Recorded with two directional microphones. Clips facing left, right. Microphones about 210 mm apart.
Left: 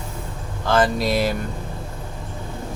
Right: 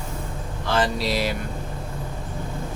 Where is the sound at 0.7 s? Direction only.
50° left (ahead or behind).